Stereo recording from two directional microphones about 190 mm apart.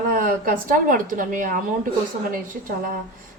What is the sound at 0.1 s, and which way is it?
A woman's voice, 50° right (ahead or behind).